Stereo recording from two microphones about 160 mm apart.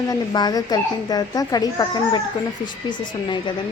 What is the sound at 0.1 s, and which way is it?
A woman's voice, 25° left (ahead or behind).